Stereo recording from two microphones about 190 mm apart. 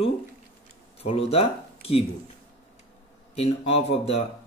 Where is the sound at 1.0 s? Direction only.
30° left (ahead or behind).